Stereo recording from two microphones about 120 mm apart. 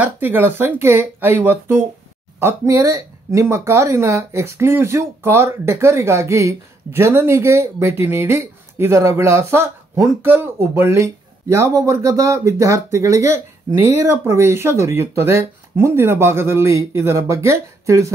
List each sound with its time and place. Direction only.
0.0 s speech: 15° right (ahead or behind)